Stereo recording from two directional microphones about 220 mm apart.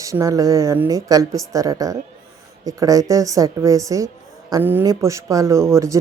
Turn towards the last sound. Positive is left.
turn(degrees=-15)  # may be behind; listen again after turning